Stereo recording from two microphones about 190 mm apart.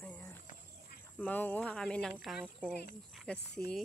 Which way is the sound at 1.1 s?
10° left (ahead or behind).